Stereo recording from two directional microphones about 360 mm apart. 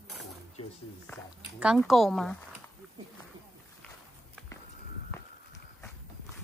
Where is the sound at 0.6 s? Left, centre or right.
Centre.